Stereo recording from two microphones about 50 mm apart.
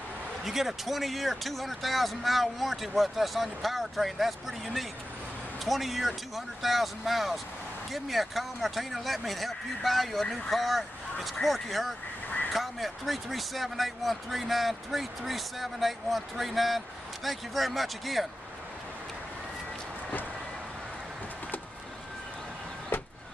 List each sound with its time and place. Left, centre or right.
0.5 s speech: centre
22.9 s vehicle: left